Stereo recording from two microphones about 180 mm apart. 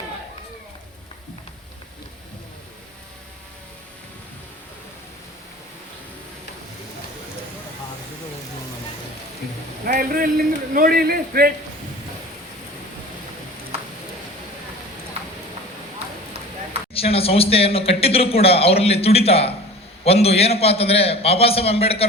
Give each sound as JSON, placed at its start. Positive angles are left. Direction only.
{"t": 9.8, "sound": "a man's voice", "side_deg": -55}
{"t": 16.9, "sound": "speech", "side_deg": 30}